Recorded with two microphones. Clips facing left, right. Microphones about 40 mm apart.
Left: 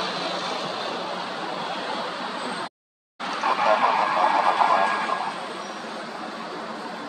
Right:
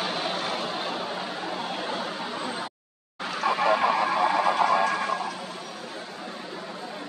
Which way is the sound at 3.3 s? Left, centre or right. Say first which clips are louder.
Left 2 dB; centre.